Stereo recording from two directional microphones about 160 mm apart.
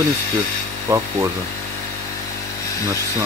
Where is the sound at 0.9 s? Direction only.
20° right (ahead or behind).